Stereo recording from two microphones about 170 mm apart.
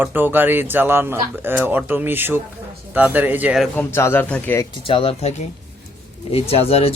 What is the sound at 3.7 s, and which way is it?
Speech, 15° left (ahead or behind).